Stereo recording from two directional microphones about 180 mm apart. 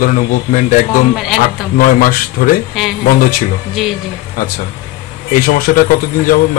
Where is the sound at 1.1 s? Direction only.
5° right (ahead or behind).